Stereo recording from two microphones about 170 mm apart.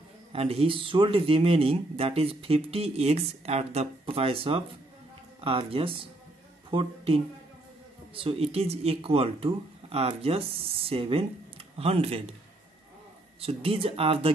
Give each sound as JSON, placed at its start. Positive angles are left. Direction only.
{"t": 0.3, "sound": "speech", "side_deg": -35}
{"t": 13.4, "sound": "speech", "side_deg": -35}